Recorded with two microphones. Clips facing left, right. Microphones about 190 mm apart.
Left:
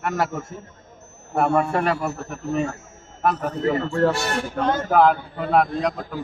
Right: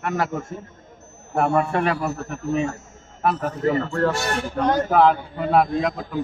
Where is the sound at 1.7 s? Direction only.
Centre (ahead or behind).